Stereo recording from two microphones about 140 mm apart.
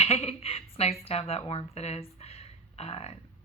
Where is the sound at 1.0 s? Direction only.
45° left (ahead or behind).